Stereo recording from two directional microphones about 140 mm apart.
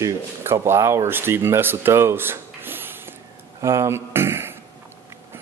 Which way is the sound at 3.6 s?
20° right (ahead or behind).